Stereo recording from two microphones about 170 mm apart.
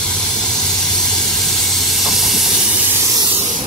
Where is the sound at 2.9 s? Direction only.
20° right (ahead or behind).